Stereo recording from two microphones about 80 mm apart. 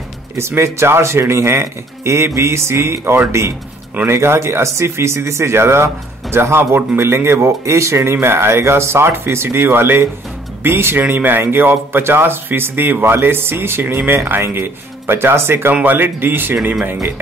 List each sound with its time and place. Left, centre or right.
0.4 s a man's voice: right